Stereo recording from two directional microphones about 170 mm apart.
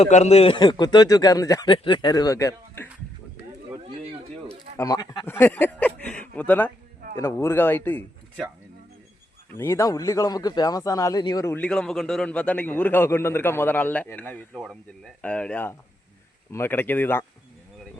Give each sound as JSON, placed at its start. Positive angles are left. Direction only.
{"t": 0.0, "sound": "a man's voice", "side_deg": 40}
{"t": 4.8, "sound": "speech", "side_deg": 20}
{"t": 9.6, "sound": "speech", "side_deg": 15}